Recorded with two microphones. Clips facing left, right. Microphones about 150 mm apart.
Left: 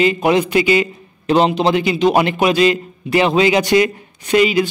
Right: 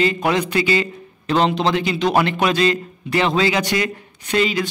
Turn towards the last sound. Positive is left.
turn(degrees=15)  # may be behind; listen again after turning